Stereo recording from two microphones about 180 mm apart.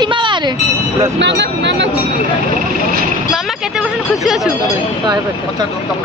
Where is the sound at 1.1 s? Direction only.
75° right (ahead or behind).